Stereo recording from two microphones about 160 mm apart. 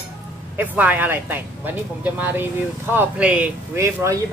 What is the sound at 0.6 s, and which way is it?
Speech, 10° right (ahead or behind).